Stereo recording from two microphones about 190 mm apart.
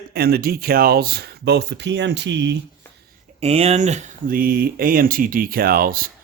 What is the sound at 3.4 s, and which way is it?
Speech, 35° right (ahead or behind).